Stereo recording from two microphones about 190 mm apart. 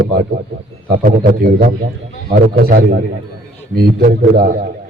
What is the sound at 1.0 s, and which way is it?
A man's voice, 50° right (ahead or behind).